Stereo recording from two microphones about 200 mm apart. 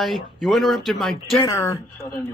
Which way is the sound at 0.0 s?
Centre (ahead or behind).